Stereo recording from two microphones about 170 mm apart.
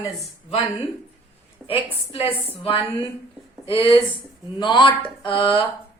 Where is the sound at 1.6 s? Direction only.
35° left (ahead or behind).